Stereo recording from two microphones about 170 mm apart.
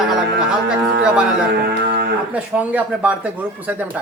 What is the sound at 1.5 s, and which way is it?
Music, 70° right (ahead or behind).